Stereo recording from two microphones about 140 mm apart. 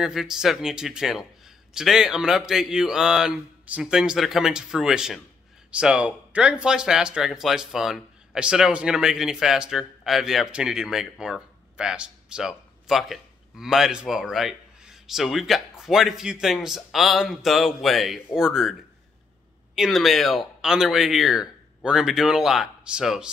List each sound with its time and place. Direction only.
0.0 s speech: 5° right (ahead or behind)